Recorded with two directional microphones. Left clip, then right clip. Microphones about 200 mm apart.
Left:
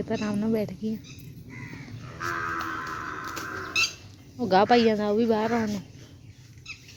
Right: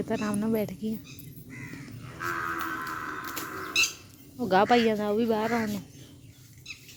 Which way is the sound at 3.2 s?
50° left (ahead or behind).